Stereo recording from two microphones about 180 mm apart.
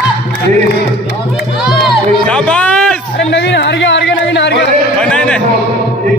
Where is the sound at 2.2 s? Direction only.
5° left (ahead or behind).